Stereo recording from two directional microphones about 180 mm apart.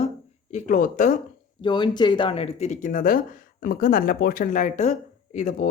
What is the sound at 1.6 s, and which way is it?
Speech, 25° left (ahead or behind).